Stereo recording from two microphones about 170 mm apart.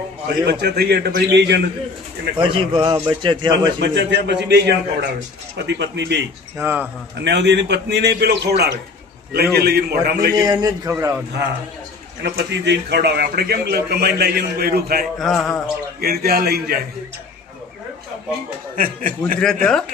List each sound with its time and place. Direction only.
0.4 s a man's voice: 70° right (ahead or behind)
2.4 s a man's voice: 30° right (ahead or behind)
3.8 s a man's voice: 90° right; by 5.0 s 75° right (ahead or behind)
5.6 s a man's voice: 90° right
6.6 s speech: 15° right (ahead or behind)
7.3 s a man's voice: 90° right; by 10.3 s 65° right (ahead or behind)
10.3 s a man's voice: 20° right (ahead or behind)
12.2 s a man's voice: 85° right; by 15.0 s 65° right (ahead or behind)
15.2 s a sound: centre (ahead or behind)
16.0 s a man's voice: 65° right (ahead or behind)
18.8 s a man's voice: 55° right (ahead or behind)